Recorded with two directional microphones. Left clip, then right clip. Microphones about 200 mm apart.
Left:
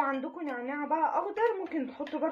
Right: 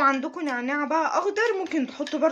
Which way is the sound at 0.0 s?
55° right (ahead or behind).